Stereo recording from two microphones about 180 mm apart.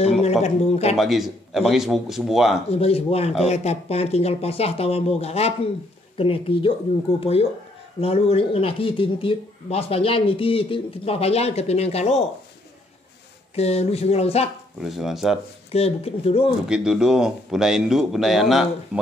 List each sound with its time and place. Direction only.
0.0 s speech: 35° left (ahead or behind)
0.9 s speech: centre (ahead or behind)
2.7 s speech: 35° left (ahead or behind)
13.6 s speech: 35° left (ahead or behind)
14.8 s speech: centre (ahead or behind)
15.7 s speech: 35° left (ahead or behind)
16.6 s speech: 5° right (ahead or behind)